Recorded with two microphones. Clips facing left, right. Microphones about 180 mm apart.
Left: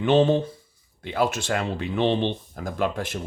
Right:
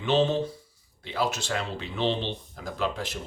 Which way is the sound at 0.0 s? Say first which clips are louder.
Left 5 dB; 55° left (ahead or behind).